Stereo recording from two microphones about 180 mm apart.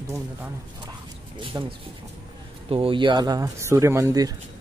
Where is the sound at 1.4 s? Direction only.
30° right (ahead or behind).